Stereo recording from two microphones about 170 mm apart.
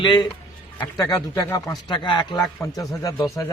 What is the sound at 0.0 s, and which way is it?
A man's voice, 25° left (ahead or behind).